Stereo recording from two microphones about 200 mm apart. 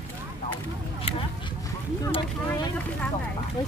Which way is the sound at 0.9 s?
30° left (ahead or behind).